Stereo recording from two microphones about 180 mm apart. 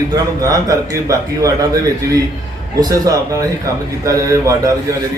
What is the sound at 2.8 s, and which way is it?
A man's voice, 20° right (ahead or behind).